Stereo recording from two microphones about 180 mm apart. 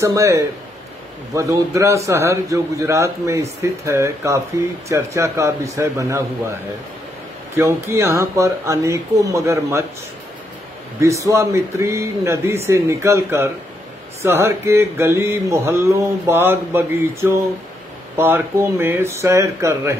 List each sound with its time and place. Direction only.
0.0 s mantra: 15° right (ahead or behind)
7.5 s mantra: 15° right (ahead or behind)
11.0 s mantra: 15° right (ahead or behind)